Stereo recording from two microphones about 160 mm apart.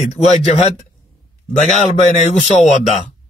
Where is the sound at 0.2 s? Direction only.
40° left (ahead or behind).